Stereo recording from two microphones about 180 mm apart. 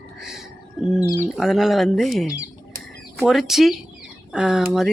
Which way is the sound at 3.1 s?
Centre (ahead or behind).